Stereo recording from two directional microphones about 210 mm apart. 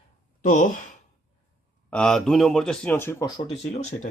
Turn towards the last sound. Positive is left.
turn(degrees=30)  # may be behind; listen again after turning